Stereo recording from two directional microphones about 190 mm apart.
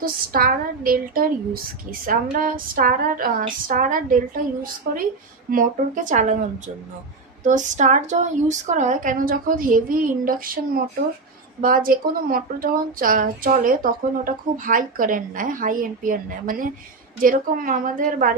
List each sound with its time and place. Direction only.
0.0 s speech: 50° right (ahead or behind)
7.4 s speech: 40° right (ahead or behind)
11.6 s speech: 50° right (ahead or behind)